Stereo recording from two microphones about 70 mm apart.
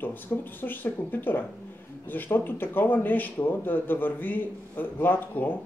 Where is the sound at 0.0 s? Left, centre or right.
Left.